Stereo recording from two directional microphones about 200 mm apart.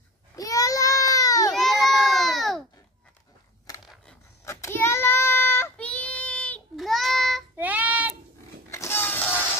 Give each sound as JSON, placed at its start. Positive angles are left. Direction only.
{"t": 0.4, "sound": "baby cry", "side_deg": 15}
{"t": 1.5, "sound": "baby cry", "side_deg": 0}
{"t": 4.5, "sound": "child singing", "side_deg": 15}
{"t": 8.6, "sound": "a sound", "side_deg": 15}